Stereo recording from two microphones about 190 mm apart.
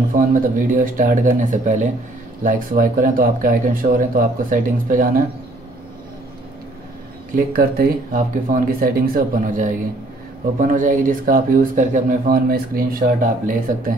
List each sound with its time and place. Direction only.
0.1 s speech: 45° right (ahead or behind)
7.3 s speech: 50° right (ahead or behind)